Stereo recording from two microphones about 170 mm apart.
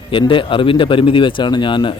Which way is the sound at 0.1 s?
30° left (ahead or behind).